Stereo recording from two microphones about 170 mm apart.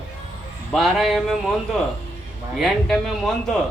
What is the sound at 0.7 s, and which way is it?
A man's voice, centre (ahead or behind).